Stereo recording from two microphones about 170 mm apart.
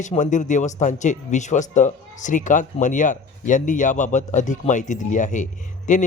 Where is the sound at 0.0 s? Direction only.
45° left (ahead or behind).